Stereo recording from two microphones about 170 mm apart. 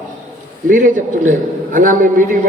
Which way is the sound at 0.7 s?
50° right (ahead or behind).